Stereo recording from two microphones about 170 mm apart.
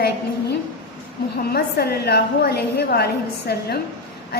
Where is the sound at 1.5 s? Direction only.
65° left (ahead or behind).